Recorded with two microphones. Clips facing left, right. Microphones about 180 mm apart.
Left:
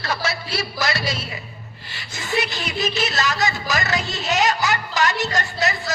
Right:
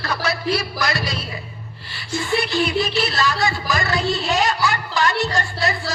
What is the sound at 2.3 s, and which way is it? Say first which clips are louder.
A woman's voice: right 4 dB; 20° left (ahead or behind).